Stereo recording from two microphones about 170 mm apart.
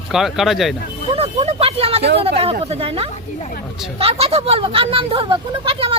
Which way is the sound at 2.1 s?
35° right (ahead or behind).